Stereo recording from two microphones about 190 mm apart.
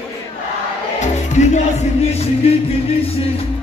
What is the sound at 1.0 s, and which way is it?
Music, 35° left (ahead or behind).